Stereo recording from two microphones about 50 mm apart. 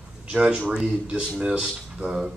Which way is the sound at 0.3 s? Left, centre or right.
Centre.